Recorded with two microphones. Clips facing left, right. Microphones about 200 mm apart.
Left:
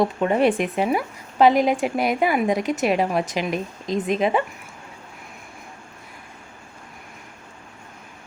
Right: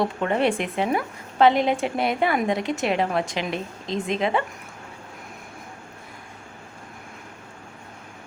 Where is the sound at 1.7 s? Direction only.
10° left (ahead or behind).